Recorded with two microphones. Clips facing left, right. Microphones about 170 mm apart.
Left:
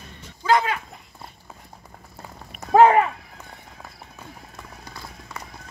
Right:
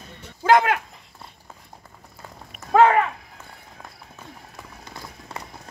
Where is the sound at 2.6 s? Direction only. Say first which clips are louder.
Left 2 dB; 30° left (ahead or behind).